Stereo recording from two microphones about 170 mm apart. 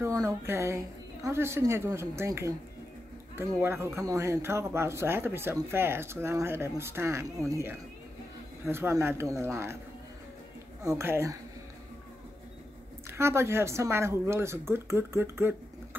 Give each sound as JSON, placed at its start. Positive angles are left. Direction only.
{"t": 0.0, "sound": "speech", "side_deg": -20}
{"t": 10.8, "sound": "speech", "side_deg": -15}
{"t": 13.2, "sound": "speech", "side_deg": -15}